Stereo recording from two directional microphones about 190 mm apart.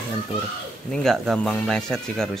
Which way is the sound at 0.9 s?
5° left (ahead or behind).